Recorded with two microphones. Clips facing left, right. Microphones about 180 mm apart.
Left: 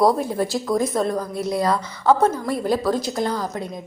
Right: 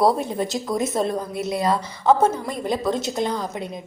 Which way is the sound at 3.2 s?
20° right (ahead or behind).